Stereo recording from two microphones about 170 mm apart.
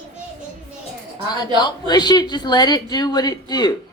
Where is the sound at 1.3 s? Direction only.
25° left (ahead or behind).